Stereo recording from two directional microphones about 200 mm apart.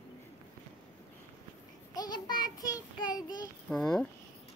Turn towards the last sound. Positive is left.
turn(degrees=0)  # may be behind; listen again after turning